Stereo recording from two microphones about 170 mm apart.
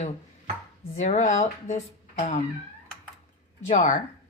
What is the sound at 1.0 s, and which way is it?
Speech, 40° left (ahead or behind).